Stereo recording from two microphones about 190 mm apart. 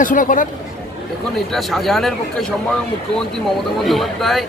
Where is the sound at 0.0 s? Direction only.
45° left (ahead or behind).